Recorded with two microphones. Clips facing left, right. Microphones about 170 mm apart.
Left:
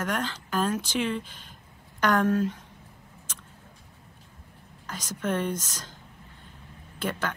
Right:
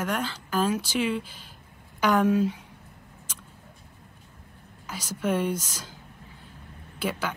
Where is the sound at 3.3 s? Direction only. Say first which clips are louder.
Even; 10° right (ahead or behind).